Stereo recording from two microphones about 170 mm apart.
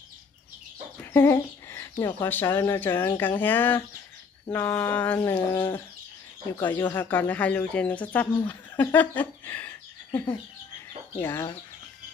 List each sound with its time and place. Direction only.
1.1 s chicken: 15° left (ahead or behind)
2.2 s speech: 15° left (ahead or behind)